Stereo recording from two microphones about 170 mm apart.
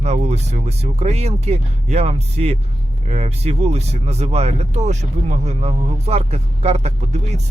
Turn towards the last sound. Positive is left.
turn(degrees=-40)  # may be behind; listen again after turning